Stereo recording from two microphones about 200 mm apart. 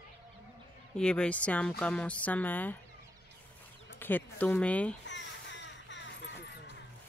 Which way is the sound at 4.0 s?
10° left (ahead or behind).